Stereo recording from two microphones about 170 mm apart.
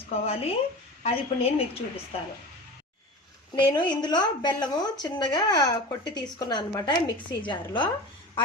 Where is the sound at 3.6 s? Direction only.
25° left (ahead or behind).